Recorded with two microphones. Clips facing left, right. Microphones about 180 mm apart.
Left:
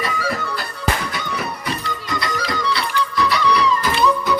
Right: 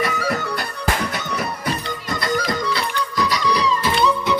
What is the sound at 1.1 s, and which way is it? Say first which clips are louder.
Music: right 1 dB; 45° right (ahead or behind).